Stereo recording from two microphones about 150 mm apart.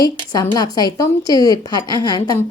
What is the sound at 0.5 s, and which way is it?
A woman's voice, 25° left (ahead or behind).